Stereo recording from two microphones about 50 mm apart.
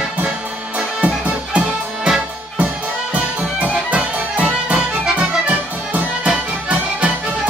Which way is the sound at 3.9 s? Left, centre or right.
Right.